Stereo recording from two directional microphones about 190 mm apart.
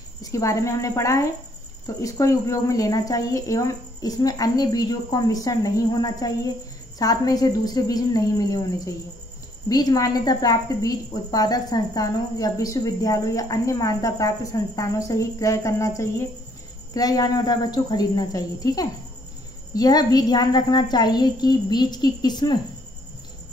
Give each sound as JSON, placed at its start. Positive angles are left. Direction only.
{"t": 0.2, "sound": "a woman's voice", "side_deg": 15}